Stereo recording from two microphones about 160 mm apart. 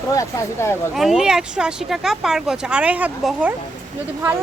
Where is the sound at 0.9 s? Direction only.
Centre (ahead or behind).